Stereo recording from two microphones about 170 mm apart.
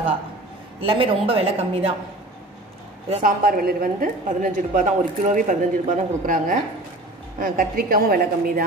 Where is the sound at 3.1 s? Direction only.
40° right (ahead or behind).